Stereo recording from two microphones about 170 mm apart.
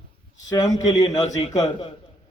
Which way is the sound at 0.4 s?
25° left (ahead or behind).